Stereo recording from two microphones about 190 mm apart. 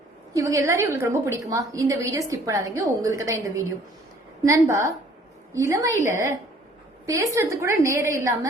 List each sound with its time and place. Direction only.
0.3 s a woman's voice: 15° right (ahead or behind)
7.0 s a woman's voice: 15° right (ahead or behind)